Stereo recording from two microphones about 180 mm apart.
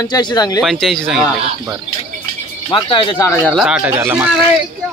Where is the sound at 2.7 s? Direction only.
30° left (ahead or behind).